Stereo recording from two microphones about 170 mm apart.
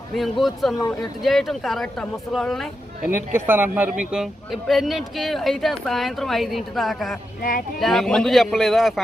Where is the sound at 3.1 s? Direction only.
15° right (ahead or behind).